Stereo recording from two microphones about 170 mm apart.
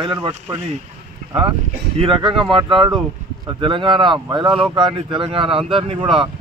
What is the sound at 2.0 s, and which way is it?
Speech, 30° right (ahead or behind).